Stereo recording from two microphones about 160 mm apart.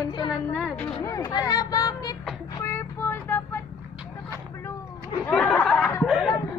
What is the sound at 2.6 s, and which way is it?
Child singing, 15° left (ahead or behind).